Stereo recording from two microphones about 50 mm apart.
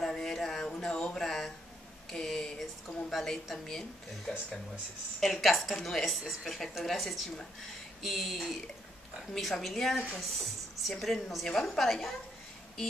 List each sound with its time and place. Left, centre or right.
0.0 s music: centre
0.8 s a sound: centre
3.1 s a woman's voice: centre
3.5 s speech: centre
5.2 s a woman's voice: centre